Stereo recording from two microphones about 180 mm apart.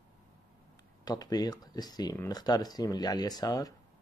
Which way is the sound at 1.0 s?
20° left (ahead or behind).